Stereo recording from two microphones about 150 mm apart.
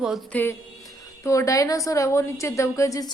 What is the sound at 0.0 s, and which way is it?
Speech, centre (ahead or behind).